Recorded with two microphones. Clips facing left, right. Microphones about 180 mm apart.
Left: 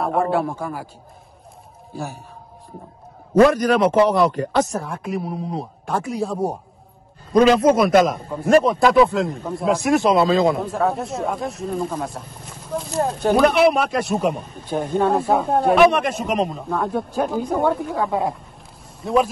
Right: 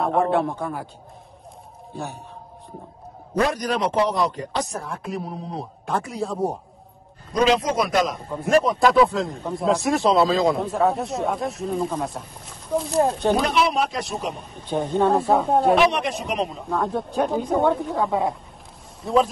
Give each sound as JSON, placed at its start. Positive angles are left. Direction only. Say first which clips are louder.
{"t": 0.0, "sound": "a man's voice", "louder": "even", "side_deg": 0}
{"t": 3.4, "sound": "speech", "louder": "left 7 dB", "side_deg": 60}
{"t": 4.6, "sound": "a man's voice", "louder": "left 4 dB", "side_deg": 0}
{"t": 7.3, "sound": "a man's voice", "louder": "left 6 dB", "side_deg": 55}
{"t": 8.6, "sound": "a man's voice", "louder": "left 2 dB", "side_deg": 0}
{"t": 13.4, "sound": "speech", "louder": "left 6 dB", "side_deg": 60}
{"t": 14.4, "sound": "a man's voice", "louder": "left 1 dB", "side_deg": 0}